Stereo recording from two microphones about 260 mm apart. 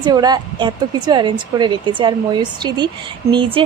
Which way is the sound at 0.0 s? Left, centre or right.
Centre.